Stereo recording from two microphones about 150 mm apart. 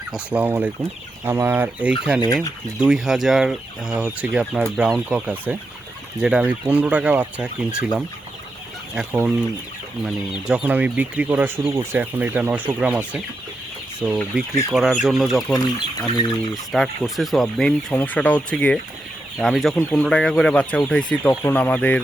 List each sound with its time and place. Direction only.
0.1 s speech: 10° right (ahead or behind)
2.2 s speech: 25° left (ahead or behind)
2.8 s speech: 5° right (ahead or behind)
9.0 s speech: 5° right (ahead or behind)
14.0 s speech: 5° left (ahead or behind)
15.6 s speech: 30° left (ahead or behind)
16.7 s speech: centre (ahead or behind)